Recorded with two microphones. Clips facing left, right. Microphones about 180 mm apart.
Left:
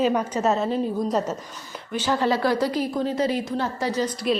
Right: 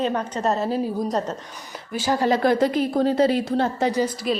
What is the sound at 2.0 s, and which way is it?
Speech, 45° right (ahead or behind).